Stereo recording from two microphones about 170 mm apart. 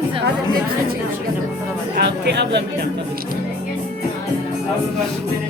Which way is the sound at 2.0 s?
80° right.